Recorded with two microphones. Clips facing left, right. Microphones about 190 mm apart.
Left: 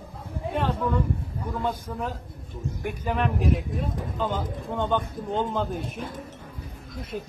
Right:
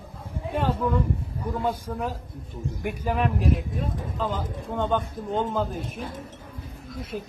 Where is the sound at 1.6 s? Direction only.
10° right (ahead or behind).